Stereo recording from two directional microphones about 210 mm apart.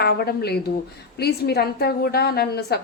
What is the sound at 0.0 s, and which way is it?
A woman's voice, 50° left (ahead or behind).